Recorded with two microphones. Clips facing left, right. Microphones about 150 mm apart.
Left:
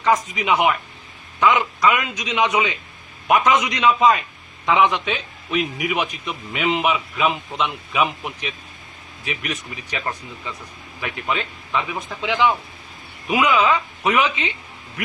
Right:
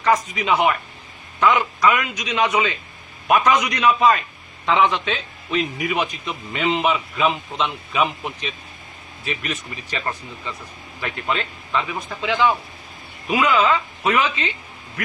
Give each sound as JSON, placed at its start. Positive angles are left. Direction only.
{"t": 0.0, "sound": "a man's voice", "side_deg": 20}